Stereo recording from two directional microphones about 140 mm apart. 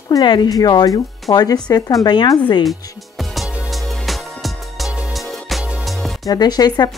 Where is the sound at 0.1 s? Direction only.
30° left (ahead or behind).